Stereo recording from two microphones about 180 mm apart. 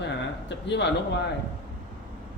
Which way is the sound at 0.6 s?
75° left (ahead or behind).